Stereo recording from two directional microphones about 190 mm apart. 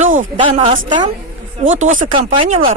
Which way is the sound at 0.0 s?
40° right (ahead or behind).